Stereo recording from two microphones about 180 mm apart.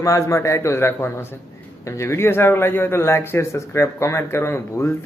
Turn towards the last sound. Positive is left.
turn(degrees=15)  # may be behind; listen again after turning